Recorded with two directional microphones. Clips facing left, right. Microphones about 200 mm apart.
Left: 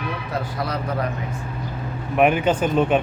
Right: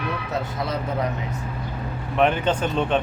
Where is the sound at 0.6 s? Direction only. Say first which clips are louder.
Left 1 dB; 20° right (ahead or behind).